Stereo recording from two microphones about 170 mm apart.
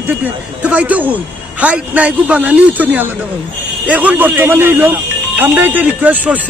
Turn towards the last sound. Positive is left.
turn(degrees=-10)  # may be behind; listen again after turning